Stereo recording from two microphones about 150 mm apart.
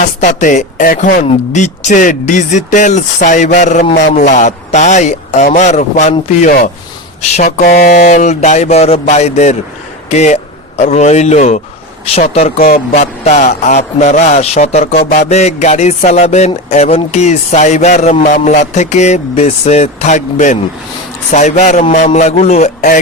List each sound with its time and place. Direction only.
0.2 s speech: 55° left (ahead or behind)
12.5 s speech: 75° left (ahead or behind)
12.9 s speech: 45° left (ahead or behind)